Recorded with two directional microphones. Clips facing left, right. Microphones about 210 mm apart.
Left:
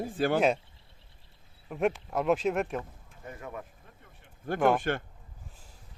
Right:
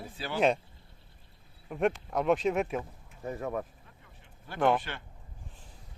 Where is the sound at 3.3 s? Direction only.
40° right (ahead or behind).